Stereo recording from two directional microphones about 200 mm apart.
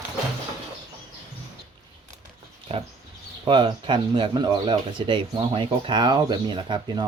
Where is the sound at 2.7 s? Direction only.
30° right (ahead or behind).